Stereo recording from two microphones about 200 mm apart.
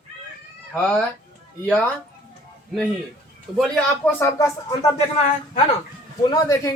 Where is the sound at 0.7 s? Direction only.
Centre (ahead or behind).